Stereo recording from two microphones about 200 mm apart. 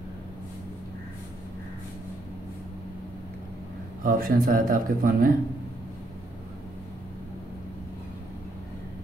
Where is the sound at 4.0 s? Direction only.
45° right (ahead or behind).